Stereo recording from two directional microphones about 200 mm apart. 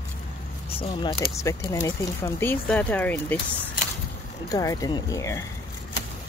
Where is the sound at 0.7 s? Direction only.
25° left (ahead or behind); by 3.4 s 10° left (ahead or behind).